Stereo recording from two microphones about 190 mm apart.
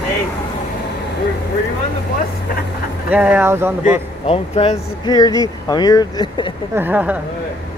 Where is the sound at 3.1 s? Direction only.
10° right (ahead or behind).